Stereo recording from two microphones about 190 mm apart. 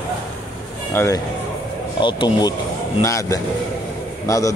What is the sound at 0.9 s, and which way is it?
A man's voice, 15° left (ahead or behind).